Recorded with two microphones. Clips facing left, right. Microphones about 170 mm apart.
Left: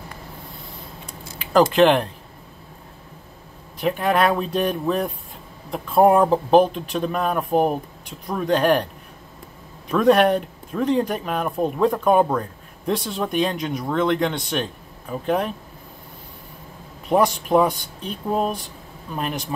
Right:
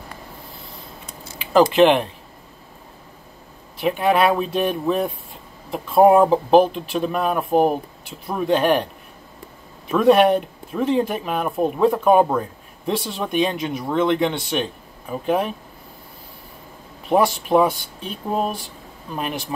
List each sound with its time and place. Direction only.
1.5 s speech: 5° right (ahead or behind)
3.8 s speech: centre (ahead or behind)
9.8 s speech: 5° right (ahead or behind)
17.1 s speech: centre (ahead or behind)